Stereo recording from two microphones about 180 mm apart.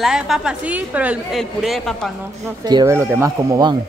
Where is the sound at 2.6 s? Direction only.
25° right (ahead or behind).